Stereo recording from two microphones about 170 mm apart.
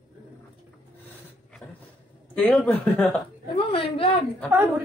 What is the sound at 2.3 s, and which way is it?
Speech, 10° left (ahead or behind).